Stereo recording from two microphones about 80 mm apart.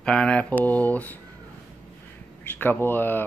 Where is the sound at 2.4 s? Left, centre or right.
Left.